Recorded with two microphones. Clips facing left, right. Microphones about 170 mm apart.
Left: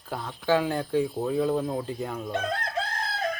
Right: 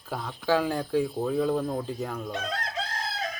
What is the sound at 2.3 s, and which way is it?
Chicken, 55° left (ahead or behind).